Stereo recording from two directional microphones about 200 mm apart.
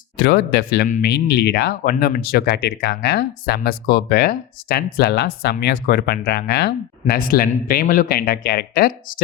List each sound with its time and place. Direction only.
0.2 s speech: 55° left (ahead or behind)